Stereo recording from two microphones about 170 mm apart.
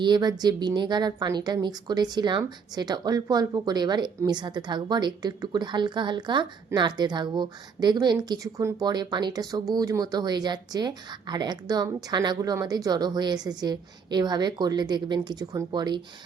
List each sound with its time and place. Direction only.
0.0 s a woman's voice: 25° right (ahead or behind)